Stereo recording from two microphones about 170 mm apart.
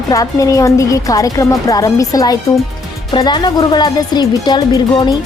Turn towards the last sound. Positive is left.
turn(degrees=25)  # may be behind; listen again after turning